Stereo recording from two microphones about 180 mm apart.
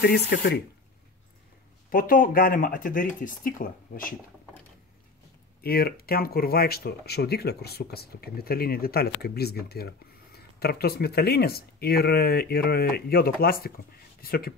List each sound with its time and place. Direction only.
0.3 s speech: 60° left (ahead or behind)
1.9 s speech: 50° left (ahead or behind)
5.6 s speech: 55° left (ahead or behind)